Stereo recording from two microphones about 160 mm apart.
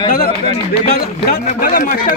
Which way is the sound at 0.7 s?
65° left (ahead or behind).